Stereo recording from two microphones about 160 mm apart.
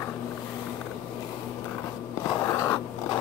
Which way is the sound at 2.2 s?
20° left (ahead or behind).